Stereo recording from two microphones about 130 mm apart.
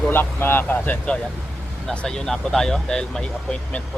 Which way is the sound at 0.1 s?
15° left (ahead or behind).